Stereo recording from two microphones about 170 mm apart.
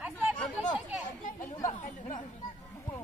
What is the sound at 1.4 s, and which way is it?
Chatter, 15° left (ahead or behind).